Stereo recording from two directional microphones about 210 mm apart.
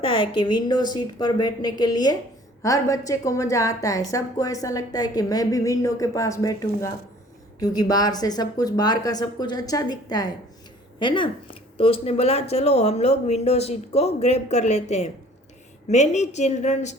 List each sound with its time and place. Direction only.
0.1 s a woman's voice: 25° left (ahead or behind)